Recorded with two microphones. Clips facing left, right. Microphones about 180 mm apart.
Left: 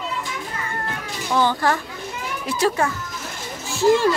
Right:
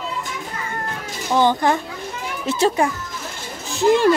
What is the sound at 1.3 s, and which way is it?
A woman's voice, 20° right (ahead or behind).